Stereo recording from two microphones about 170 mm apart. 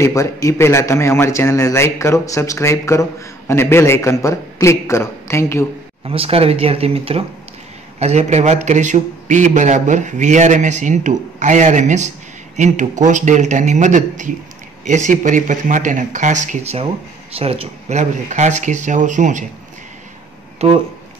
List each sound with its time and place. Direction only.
0.0 s a man's voice: 15° left (ahead or behind)
6.0 s a man's voice: 35° right (ahead or behind)